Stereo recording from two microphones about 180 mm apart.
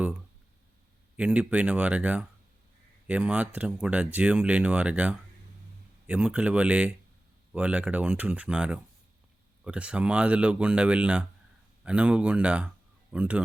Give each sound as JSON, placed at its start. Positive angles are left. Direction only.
{"t": 1.1, "sound": "speech", "side_deg": -5}